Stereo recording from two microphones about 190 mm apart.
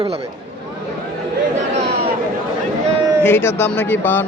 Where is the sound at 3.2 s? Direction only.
10° left (ahead or behind).